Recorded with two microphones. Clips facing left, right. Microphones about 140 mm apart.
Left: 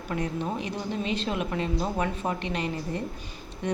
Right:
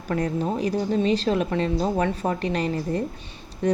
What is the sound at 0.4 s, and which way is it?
A woman's voice, 40° right (ahead or behind).